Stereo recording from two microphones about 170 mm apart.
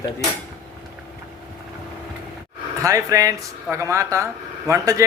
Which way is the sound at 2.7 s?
20° right (ahead or behind).